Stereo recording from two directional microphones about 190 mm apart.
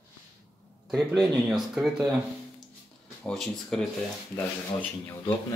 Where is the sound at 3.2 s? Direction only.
5° left (ahead or behind).